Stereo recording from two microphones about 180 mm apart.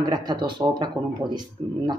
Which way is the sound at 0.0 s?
25° right (ahead or behind).